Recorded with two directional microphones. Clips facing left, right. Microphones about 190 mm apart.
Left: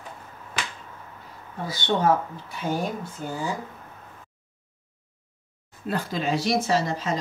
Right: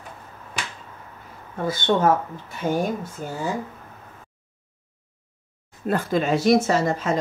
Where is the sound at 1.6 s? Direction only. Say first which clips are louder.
Right 3 dB; 50° right (ahead or behind).